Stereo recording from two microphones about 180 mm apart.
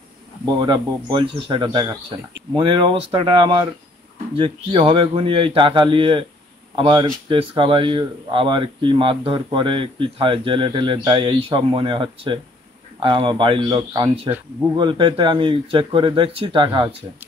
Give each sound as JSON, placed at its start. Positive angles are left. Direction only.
{"t": 0.5, "sound": "speech", "side_deg": -25}